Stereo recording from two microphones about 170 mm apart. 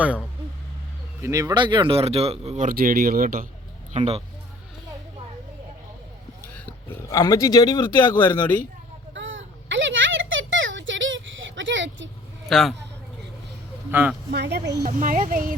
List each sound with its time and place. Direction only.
1.2 s speech: 20° right (ahead or behind); by 2.6 s 40° right (ahead or behind)
2.6 s speech: 60° right (ahead or behind)
3.9 s speech: 40° right (ahead or behind)
6.7 s speech: 20° left (ahead or behind)
8.1 s speech: 15° left (ahead or behind)
9.1 s a sound: 90° right
12.5 s a man's voice: centre (ahead or behind)
13.9 s speech: 10° right (ahead or behind)
14.3 s speech: 75° right (ahead or behind)
14.8 s speech: 50° right (ahead or behind)